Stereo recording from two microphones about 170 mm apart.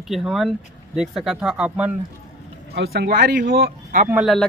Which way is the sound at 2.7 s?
80° right.